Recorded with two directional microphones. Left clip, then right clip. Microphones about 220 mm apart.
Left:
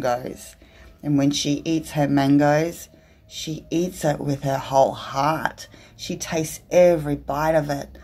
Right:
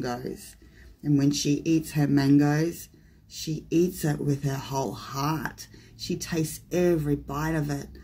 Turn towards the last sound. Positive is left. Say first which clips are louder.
# left 10 dB
turn(degrees=0)  # may be behind; listen again after turning